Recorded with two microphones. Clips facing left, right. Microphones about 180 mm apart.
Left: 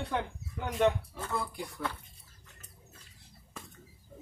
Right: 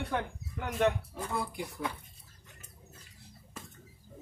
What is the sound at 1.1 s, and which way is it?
Speech, 15° right (ahead or behind).